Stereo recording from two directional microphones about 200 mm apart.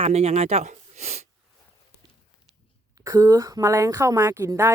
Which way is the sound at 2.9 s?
15° right (ahead or behind).